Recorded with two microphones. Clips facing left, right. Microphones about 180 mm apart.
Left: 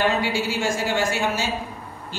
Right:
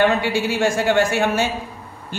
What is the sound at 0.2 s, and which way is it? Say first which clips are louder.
A man's voice: right 4 dB; 60° right (ahead or behind).